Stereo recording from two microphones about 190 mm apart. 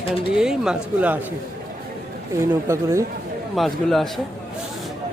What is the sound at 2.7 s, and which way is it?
Speech, 15° right (ahead or behind).